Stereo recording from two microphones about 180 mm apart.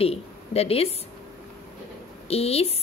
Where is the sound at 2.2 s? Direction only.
35° left (ahead or behind).